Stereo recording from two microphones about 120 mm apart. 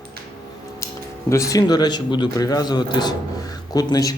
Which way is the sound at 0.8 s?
25° left (ahead or behind).